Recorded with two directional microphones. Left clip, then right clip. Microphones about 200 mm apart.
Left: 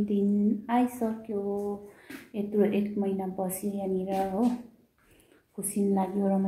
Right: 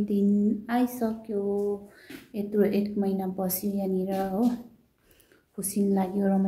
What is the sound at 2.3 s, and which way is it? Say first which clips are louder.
A woman's voice: right 1 dB; 5° right (ahead or behind).